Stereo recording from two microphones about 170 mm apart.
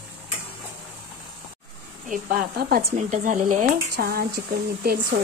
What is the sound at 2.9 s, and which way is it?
Speech, 45° right (ahead or behind).